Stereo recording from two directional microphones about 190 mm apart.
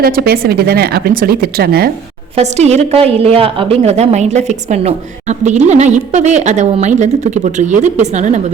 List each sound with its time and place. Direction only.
0.0 s speech: 55° right (ahead or behind)
2.3 s a woman's voice: 35° right (ahead or behind)